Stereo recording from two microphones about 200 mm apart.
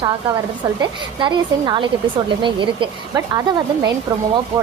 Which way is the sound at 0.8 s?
20° right (ahead or behind).